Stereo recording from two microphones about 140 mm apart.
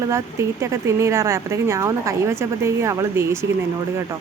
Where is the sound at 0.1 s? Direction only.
20° right (ahead or behind).